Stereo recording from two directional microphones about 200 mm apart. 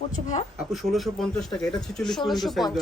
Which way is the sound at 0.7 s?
Centre (ahead or behind).